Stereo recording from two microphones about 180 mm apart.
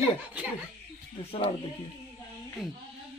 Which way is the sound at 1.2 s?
35° left (ahead or behind).